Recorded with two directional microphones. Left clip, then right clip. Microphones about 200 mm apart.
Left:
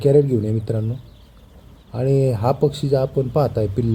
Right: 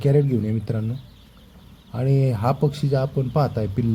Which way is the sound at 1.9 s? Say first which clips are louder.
Left 5 dB; 15° right (ahead or behind).